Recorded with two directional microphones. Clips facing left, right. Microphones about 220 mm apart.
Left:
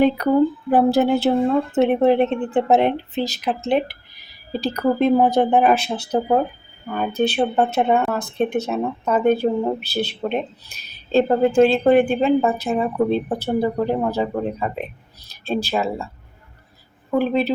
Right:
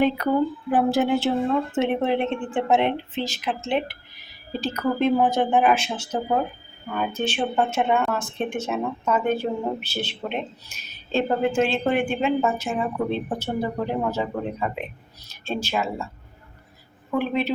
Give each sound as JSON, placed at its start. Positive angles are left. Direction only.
{"t": 0.2, "sound": "speech", "side_deg": 40}
{"t": 17.1, "sound": "speech", "side_deg": 35}